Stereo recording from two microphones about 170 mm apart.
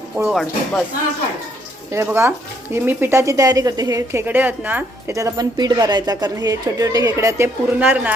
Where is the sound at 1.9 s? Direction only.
15° right (ahead or behind).